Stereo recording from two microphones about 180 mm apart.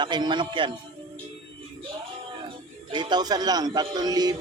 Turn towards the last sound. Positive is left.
turn(degrees=-20)  # may be behind; listen again after turning